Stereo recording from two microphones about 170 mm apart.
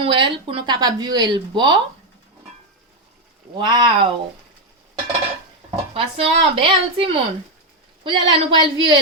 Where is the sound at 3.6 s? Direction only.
25° right (ahead or behind).